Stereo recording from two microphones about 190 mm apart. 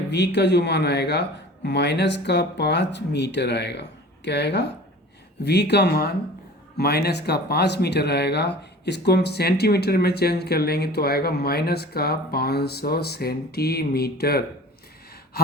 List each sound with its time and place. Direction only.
0.1 s speech: 65° left (ahead or behind)